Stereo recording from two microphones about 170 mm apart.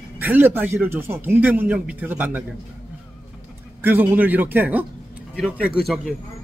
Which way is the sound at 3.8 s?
10° right (ahead or behind).